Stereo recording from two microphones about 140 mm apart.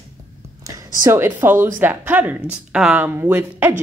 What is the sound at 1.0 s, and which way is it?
A woman's voice, 15° right (ahead or behind).